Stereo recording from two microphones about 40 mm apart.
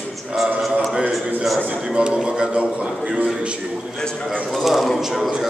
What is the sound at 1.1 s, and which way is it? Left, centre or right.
Speech, centre.